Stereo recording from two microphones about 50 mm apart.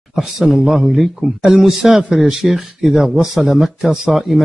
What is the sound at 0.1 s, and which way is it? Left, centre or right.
Speech, centre.